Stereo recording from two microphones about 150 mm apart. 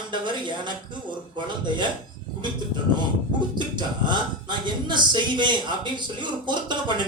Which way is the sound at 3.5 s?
30° right (ahead or behind).